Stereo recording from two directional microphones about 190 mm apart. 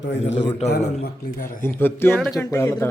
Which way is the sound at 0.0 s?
70° left (ahead or behind).